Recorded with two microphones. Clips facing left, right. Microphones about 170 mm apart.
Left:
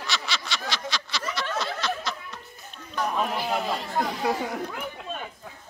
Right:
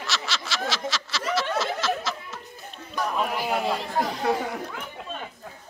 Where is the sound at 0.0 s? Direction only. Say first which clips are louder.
Right 1 dB; centre (ahead or behind).